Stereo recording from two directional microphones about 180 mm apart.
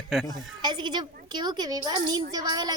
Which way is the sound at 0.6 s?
25° right (ahead or behind).